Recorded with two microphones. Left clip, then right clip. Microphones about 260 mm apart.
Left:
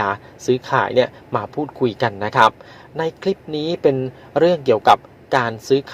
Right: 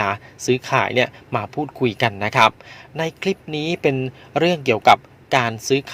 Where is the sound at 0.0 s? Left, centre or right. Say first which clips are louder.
Left 1 dB; right.